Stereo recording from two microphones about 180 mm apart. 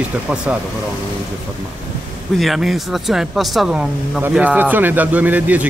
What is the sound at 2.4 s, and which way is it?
Speech, centre (ahead or behind).